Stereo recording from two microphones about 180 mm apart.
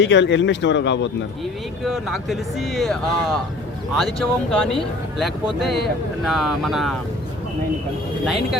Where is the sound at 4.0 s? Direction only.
Centre (ahead or behind).